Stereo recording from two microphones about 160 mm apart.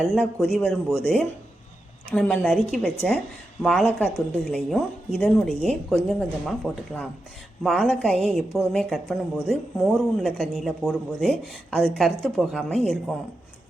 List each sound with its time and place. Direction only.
0.0 s speech: centre (ahead or behind)
7.6 s speech: centre (ahead or behind)